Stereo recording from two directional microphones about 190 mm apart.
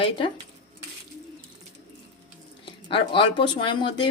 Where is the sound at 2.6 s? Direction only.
25° left (ahead or behind).